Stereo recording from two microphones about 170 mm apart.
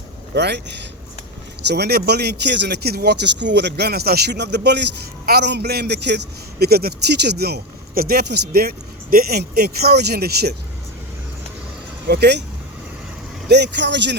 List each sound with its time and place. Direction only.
0.3 s speech: 80° right
12.0 s speech: 75° right (ahead or behind)
13.5 s speech: 85° right